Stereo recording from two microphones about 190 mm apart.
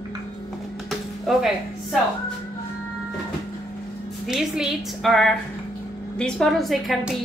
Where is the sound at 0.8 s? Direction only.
Centre (ahead or behind).